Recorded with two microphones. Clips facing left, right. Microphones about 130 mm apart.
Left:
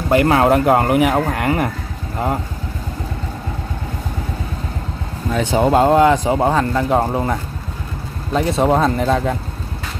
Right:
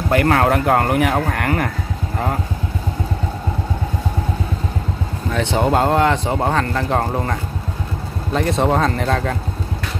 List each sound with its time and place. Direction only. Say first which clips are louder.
0.1 s speech: left 3 dB; 15° left (ahead or behind)
5.3 s speech: left 3 dB; 10° left (ahead or behind)